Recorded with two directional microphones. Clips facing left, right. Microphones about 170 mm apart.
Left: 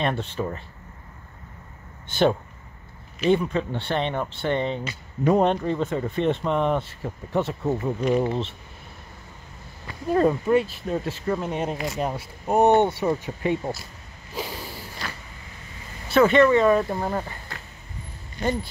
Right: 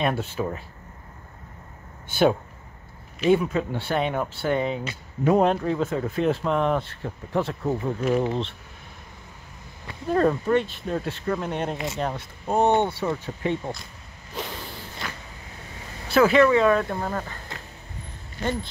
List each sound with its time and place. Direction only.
0.0 s speech: 5° right (ahead or behind)
2.0 s speech: 10° right (ahead or behind)
10.1 s speech: 5° left (ahead or behind)
14.3 s a sound: 5° left (ahead or behind)
16.1 s speech: centre (ahead or behind)
18.4 s speech: 10° left (ahead or behind)